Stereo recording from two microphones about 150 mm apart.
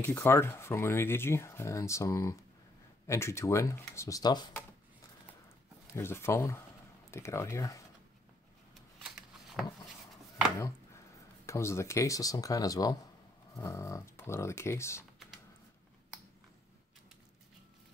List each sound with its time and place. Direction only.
0.0 s speech: 15° left (ahead or behind)
5.9 s speech: 15° left (ahead or behind)
11.4 s speech: 20° left (ahead or behind)